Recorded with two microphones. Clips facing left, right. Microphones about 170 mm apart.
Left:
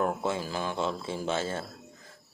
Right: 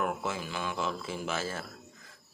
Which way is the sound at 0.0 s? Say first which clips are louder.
Left 4 dB; 30° left (ahead or behind).